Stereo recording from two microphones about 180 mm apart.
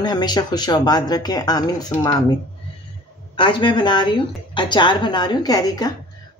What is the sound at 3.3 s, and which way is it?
Speech, 25° left (ahead or behind).